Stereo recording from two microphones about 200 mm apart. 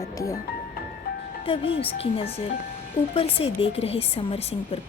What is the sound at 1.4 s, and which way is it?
A woman's voice, 30° left (ahead or behind).